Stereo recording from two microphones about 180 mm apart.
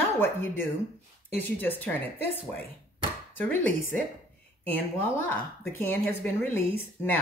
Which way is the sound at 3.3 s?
10° left (ahead or behind).